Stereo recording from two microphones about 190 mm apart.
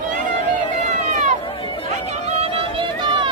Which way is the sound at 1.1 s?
40° right (ahead or behind).